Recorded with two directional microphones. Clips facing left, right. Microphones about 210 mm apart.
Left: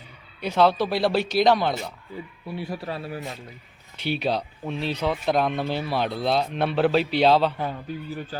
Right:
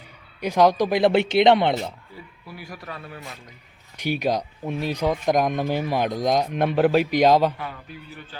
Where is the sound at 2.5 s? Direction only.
30° left (ahead or behind).